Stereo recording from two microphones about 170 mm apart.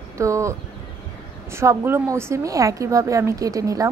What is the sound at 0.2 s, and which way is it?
Speech, 15° right (ahead or behind).